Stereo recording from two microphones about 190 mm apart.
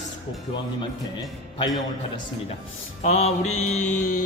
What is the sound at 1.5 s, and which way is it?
Speech, 20° left (ahead or behind).